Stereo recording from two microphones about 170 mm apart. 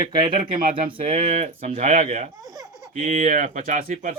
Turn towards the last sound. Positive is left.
turn(degrees=-50)  # may be behind; listen again after turning